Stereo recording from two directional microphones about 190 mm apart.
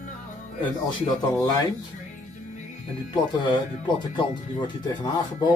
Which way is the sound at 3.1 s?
25° left (ahead or behind).